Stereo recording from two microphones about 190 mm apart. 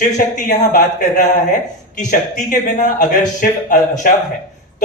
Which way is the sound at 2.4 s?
45° left (ahead or behind).